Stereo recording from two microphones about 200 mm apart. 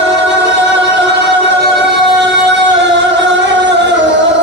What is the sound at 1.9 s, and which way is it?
Music, 60° right (ahead or behind).